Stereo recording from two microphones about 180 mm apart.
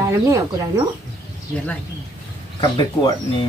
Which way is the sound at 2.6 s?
25° left (ahead or behind).